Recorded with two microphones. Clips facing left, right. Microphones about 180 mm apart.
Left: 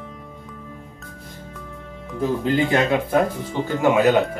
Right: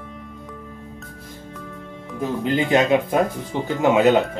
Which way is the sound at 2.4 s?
20° right (ahead or behind).